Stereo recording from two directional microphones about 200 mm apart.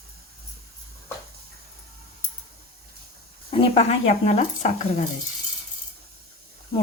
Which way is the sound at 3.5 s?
30° left (ahead or behind).